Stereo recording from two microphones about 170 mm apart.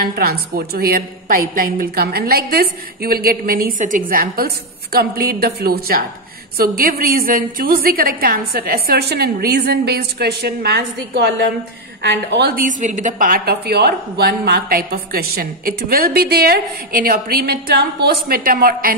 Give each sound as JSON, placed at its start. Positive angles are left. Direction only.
{"t": 0.0, "sound": "a woman's voice", "side_deg": -65}
{"t": 12.5, "sound": "a woman's voice", "side_deg": -50}